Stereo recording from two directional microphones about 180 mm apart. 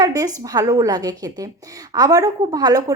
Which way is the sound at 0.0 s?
20° right (ahead or behind).